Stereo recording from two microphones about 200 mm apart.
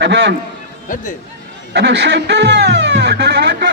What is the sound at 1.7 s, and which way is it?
Speech, 65° right (ahead or behind).